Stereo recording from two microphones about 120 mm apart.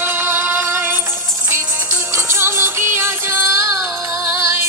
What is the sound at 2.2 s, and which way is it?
Music, 20° right (ahead or behind).